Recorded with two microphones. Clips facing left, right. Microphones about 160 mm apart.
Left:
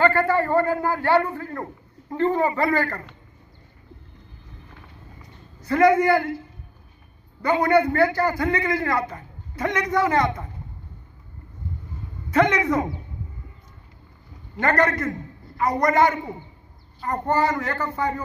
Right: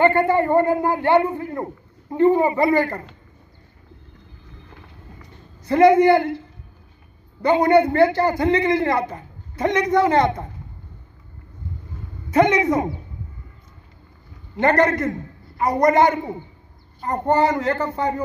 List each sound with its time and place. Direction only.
0.0 s a man's voice: 20° right (ahead or behind)
5.7 s a man's voice: 25° right (ahead or behind)
7.4 s a man's voice: 25° right (ahead or behind)
12.3 s a man's voice: 20° right (ahead or behind)
14.6 s a man's voice: 25° right (ahead or behind)